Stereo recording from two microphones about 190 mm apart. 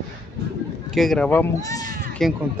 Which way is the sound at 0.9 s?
Centre (ahead or behind).